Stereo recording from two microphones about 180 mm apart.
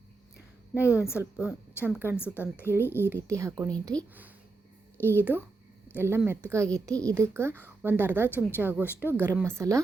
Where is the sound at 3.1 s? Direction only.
15° right (ahead or behind).